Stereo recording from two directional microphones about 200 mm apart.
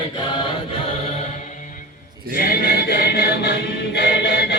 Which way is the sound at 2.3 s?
50° left (ahead or behind).